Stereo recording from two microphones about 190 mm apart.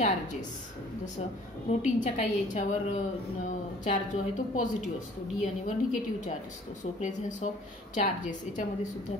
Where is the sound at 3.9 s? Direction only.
45° left (ahead or behind).